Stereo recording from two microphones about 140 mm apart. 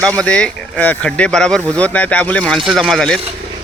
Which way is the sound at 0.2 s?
5° left (ahead or behind).